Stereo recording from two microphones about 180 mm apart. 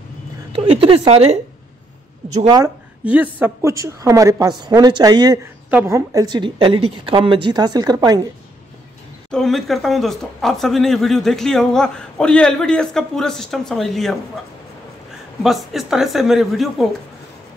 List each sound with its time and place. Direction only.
0.5 s a woman's voice: 30° right (ahead or behind)
2.3 s a woman's voice: 20° right (ahead or behind)
3.1 s a woman's voice: 10° right (ahead or behind)
9.3 s speech: centre (ahead or behind)
15.4 s speech: centre (ahead or behind)